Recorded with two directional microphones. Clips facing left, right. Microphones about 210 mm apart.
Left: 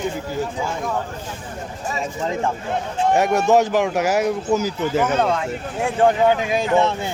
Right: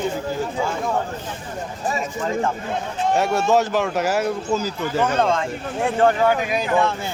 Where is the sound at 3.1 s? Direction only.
15° left (ahead or behind).